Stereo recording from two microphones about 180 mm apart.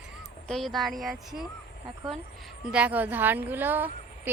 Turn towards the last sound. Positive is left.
turn(degrees=-10)  # may be behind; listen again after turning